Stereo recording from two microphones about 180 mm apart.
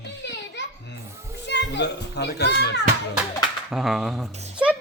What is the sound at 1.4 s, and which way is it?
A child's voice, 70° left (ahead or behind).